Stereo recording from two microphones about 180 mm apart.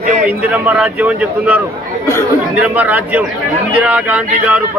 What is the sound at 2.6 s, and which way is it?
A man's voice, 10° right (ahead or behind).